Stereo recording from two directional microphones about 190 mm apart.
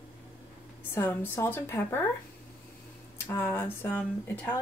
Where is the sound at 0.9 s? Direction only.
10° left (ahead or behind).